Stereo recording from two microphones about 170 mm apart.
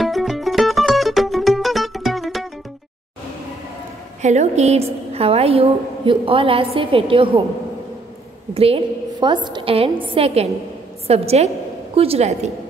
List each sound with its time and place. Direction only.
0.0 s music: centre (ahead or behind)
4.2 s a woman's voice: 40° right (ahead or behind)
8.5 s a woman's voice: 35° right (ahead or behind)